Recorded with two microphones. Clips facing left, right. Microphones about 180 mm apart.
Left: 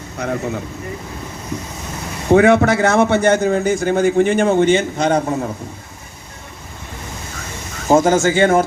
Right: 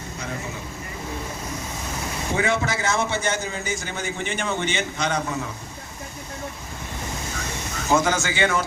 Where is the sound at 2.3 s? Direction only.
60° left (ahead or behind).